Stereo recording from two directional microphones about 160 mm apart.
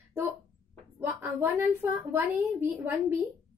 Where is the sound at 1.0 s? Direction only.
10° right (ahead or behind).